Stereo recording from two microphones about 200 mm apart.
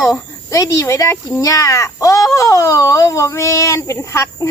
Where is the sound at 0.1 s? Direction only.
15° left (ahead or behind).